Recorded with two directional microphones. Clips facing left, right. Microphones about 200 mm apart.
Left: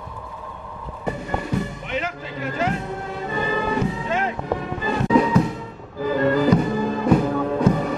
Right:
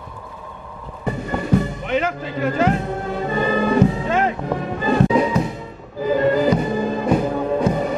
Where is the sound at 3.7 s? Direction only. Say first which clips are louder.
Right 6 dB; 50° right (ahead or behind).